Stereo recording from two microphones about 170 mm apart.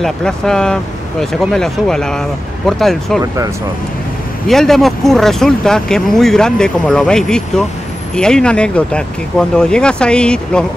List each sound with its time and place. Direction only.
0.0 s speech: 5° left (ahead or behind)
4.5 s speech: centre (ahead or behind)